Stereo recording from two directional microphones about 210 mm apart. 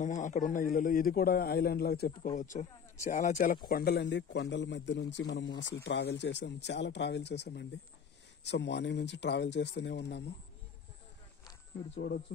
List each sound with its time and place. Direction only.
0.0 s a man's voice: 35° left (ahead or behind)
2.3 s speech: 35° left (ahead or behind)
3.6 s speech: 45° left (ahead or behind)
11.9 s a man's voice: 50° left (ahead or behind)